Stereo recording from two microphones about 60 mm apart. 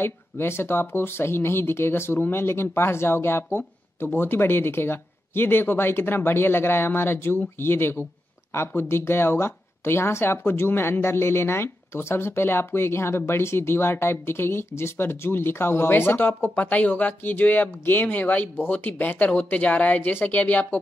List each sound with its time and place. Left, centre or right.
0.0 s speech: left